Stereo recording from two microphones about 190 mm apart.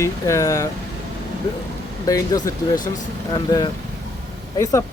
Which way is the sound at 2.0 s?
20° left (ahead or behind).